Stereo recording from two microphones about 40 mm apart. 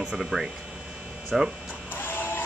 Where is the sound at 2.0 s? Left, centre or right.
Left.